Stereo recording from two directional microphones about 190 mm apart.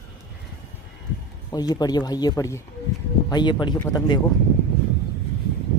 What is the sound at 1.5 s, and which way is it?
Speech, 20° left (ahead or behind).